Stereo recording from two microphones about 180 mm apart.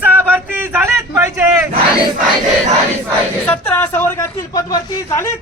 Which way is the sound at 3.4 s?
10° left (ahead or behind).